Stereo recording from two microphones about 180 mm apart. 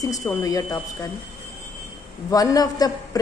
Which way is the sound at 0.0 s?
20° left (ahead or behind).